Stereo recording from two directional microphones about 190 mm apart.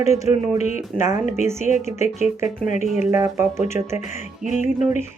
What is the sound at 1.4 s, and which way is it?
Speech, 15° right (ahead or behind).